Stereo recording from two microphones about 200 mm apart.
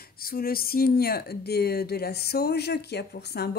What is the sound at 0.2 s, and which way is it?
Speech, 50° left (ahead or behind).